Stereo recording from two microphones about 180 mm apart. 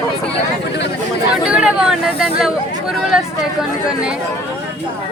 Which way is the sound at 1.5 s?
5° right (ahead or behind).